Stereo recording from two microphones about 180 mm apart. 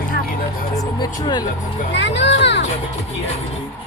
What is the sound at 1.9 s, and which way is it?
Speech, 80° left.